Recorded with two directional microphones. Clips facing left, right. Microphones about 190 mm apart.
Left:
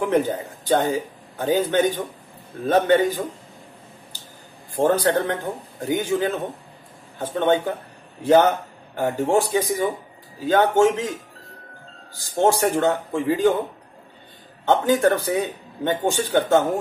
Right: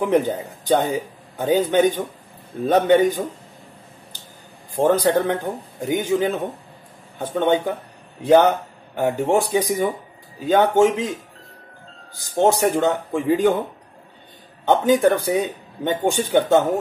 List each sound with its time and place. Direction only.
0.0 s speech: 15° right (ahead or behind)
4.8 s speech: 15° right (ahead or behind)
12.4 s speech: 15° right (ahead or behind)
14.7 s speech: 15° right (ahead or behind)